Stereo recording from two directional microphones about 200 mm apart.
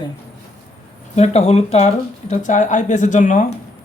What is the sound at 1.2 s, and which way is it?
Speech, 35° left (ahead or behind).